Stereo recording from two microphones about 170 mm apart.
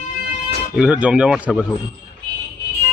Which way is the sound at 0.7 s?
5° right (ahead or behind).